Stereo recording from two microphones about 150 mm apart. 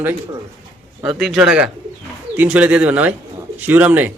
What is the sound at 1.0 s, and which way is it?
Speech, centre (ahead or behind).